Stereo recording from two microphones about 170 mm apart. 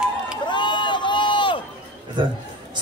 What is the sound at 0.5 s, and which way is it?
Run, 25° left (ahead or behind).